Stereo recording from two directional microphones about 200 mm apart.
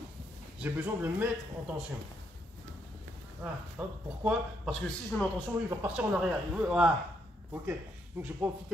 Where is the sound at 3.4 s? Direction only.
5° right (ahead or behind).